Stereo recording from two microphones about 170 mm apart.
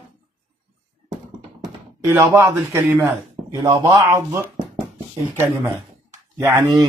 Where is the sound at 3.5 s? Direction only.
25° right (ahead or behind).